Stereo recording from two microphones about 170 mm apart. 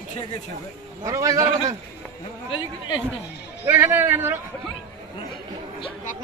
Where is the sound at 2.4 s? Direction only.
30° left (ahead or behind).